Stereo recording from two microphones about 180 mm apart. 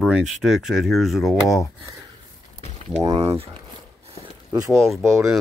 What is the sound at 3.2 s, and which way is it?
Speech, 35° right (ahead or behind).